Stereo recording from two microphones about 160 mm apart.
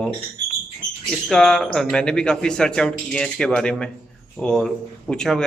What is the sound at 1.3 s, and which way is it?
Speech, 5° left (ahead or behind).